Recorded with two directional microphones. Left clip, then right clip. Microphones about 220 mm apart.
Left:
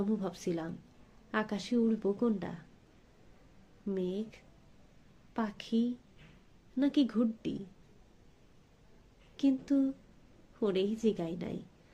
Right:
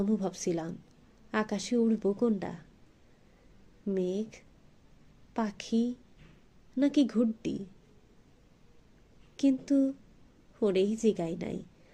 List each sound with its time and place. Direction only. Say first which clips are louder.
0.0 s a woman's voice: right 4 dB; 20° right (ahead or behind)
3.8 s a woman's voice: right 4 dB; 20° right (ahead or behind)
9.4 s a woman's voice: right 3 dB; 20° right (ahead or behind)